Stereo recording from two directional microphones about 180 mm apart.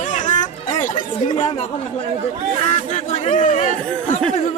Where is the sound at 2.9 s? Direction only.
40° left (ahead or behind).